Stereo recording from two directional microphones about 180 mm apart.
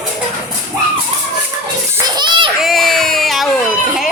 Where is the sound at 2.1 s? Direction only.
25° right (ahead or behind).